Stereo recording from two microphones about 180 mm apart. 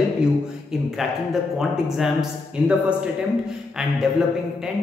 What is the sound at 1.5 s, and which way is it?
Speech, centre (ahead or behind).